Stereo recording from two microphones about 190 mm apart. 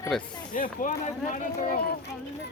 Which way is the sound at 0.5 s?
45° left (ahead or behind).